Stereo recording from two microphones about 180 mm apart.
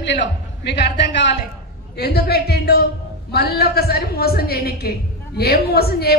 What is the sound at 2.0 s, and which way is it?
A woman's voice, 60° left (ahead or behind).